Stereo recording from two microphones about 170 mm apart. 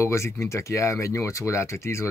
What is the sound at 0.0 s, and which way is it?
Speech, 15° left (ahead or behind).